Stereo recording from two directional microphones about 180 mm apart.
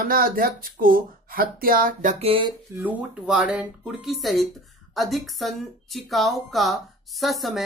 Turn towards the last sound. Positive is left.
turn(degrees=0)  # may be behind; listen again after turning